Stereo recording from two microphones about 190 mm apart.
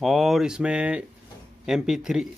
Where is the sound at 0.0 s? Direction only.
Centre (ahead or behind).